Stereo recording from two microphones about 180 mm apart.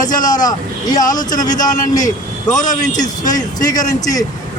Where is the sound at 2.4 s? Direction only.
45° left (ahead or behind).